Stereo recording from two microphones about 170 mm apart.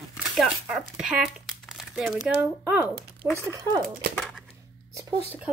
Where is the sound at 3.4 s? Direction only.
20° right (ahead or behind).